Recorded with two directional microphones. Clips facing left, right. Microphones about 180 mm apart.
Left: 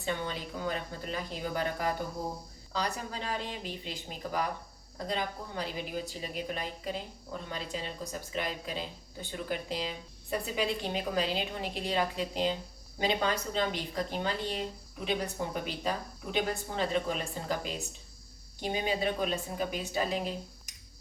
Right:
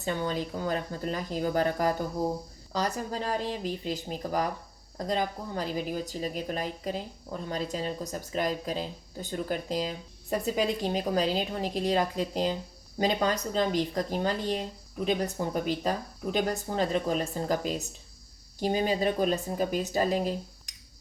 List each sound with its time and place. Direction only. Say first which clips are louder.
0.0 s speech: right 5 dB; 40° right (ahead or behind)